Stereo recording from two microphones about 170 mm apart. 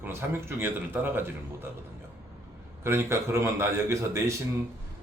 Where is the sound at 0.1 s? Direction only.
15° right (ahead or behind).